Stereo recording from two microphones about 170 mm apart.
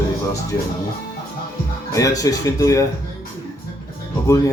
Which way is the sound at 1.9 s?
20° left (ahead or behind).